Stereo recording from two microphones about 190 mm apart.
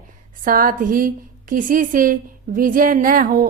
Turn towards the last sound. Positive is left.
turn(degrees=-45)  # may be behind; listen again after turning